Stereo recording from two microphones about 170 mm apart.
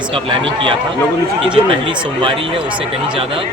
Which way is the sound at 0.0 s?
30° right (ahead or behind).